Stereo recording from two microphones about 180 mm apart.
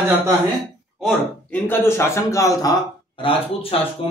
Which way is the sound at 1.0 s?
10° left (ahead or behind).